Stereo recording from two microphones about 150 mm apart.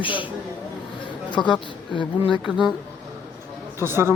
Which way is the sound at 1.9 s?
30° left (ahead or behind).